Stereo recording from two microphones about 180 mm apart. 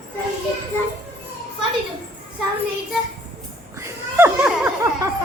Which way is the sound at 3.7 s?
15° right (ahead or behind).